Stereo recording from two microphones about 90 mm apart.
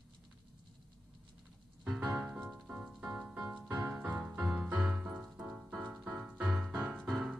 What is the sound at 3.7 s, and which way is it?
Music, 45° right (ahead or behind).